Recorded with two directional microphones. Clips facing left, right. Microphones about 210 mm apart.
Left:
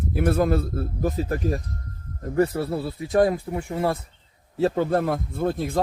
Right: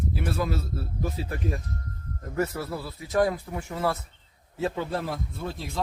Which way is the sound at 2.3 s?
30° left (ahead or behind).